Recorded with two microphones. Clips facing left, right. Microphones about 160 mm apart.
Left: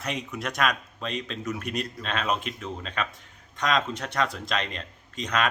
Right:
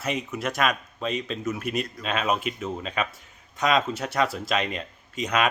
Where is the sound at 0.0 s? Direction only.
Centre (ahead or behind).